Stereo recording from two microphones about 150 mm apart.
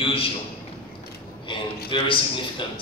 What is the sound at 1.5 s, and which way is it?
Speech, 35° left (ahead or behind).